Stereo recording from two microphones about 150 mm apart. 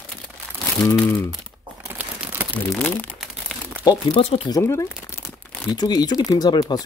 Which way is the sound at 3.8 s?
35° left (ahead or behind).